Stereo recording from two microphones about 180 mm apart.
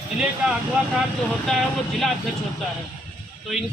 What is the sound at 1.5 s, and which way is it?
Speech, centre (ahead or behind).